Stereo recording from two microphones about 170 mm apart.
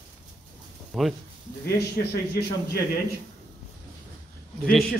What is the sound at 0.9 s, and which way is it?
Speech, centre (ahead or behind).